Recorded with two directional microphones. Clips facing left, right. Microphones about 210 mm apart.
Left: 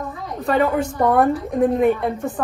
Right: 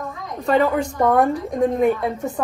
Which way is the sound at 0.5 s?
5° left (ahead or behind).